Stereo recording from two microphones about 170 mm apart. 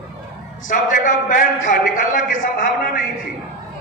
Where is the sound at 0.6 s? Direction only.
50° left (ahead or behind).